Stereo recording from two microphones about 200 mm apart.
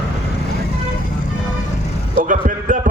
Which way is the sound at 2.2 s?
40° right (ahead or behind).